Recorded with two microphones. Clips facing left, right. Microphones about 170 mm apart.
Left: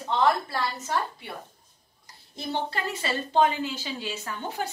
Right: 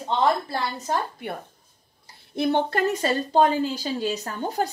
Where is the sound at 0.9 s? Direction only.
50° right (ahead or behind).